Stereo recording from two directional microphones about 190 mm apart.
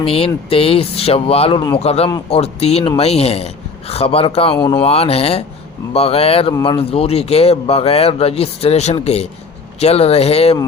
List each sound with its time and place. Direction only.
0.0 s speech: 30° left (ahead or behind)